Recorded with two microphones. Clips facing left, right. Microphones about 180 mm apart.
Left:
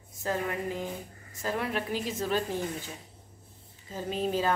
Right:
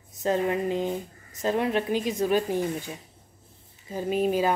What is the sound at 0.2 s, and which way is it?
Speech, 20° right (ahead or behind).